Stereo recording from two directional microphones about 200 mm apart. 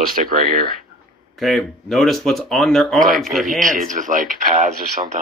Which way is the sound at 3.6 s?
40° right (ahead or behind).